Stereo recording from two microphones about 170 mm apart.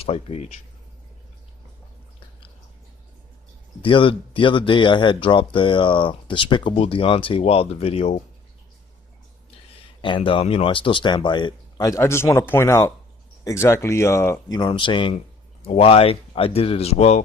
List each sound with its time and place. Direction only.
0.0 s speech: 35° left (ahead or behind)
3.8 s speech: 30° left (ahead or behind)
10.0 s speech: 30° left (ahead or behind)